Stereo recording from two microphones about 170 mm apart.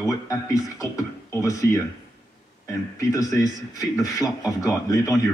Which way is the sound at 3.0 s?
20° left (ahead or behind).